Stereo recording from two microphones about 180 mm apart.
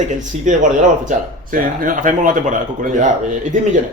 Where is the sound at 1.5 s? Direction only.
50° right (ahead or behind).